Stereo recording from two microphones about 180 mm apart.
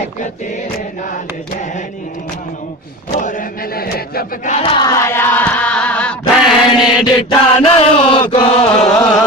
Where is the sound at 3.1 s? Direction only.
50° left (ahead or behind).